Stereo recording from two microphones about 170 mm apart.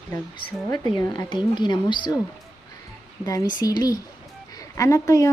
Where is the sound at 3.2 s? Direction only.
20° left (ahead or behind).